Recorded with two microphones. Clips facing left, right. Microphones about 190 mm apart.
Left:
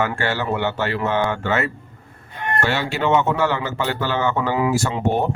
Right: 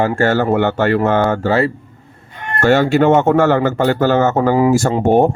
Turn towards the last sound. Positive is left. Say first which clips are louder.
# right 8 dB
turn(degrees=-50)  # may be behind; listen again after turning